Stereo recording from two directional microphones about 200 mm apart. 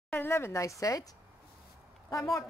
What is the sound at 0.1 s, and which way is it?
Speech, 10° left (ahead or behind).